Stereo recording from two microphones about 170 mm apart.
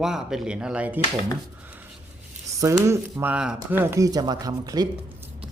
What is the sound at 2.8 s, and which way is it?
Speech, 15° right (ahead or behind).